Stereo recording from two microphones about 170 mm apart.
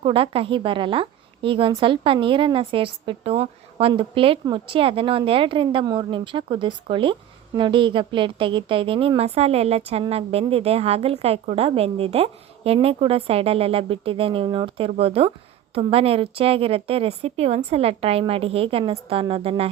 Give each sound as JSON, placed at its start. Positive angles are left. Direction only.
{"t": 0.0, "sound": "a woman's voice", "side_deg": -30}